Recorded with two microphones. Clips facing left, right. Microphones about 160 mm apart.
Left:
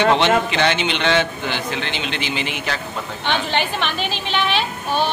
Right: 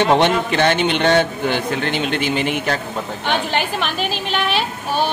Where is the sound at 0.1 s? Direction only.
50° right (ahead or behind).